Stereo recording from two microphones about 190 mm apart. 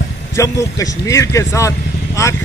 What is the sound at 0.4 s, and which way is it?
A man's voice, 15° left (ahead or behind).